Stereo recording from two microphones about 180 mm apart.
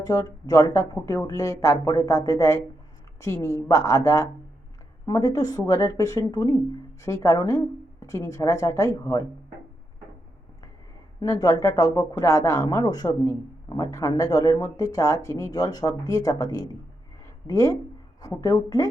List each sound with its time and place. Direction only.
0.0 s speech: 20° left (ahead or behind)
11.2 s speech: 20° left (ahead or behind)